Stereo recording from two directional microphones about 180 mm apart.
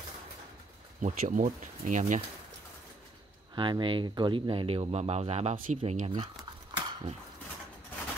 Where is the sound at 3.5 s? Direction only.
25° right (ahead or behind).